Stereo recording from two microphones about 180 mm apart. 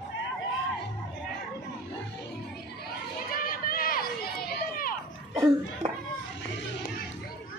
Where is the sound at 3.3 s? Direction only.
55° left (ahead or behind).